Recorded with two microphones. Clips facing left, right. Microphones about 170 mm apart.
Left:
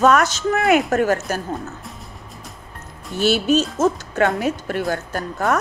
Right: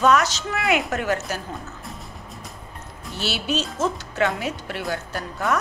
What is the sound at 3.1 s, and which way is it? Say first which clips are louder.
A woman's voice: left 9 dB; 50° left (ahead or behind).